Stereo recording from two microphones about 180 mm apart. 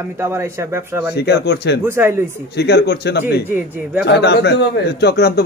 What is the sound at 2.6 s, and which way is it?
Speech, 65° left (ahead or behind).